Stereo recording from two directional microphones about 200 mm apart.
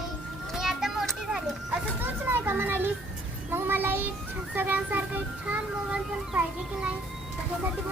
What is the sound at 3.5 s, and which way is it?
Child singing, 10° right (ahead or behind).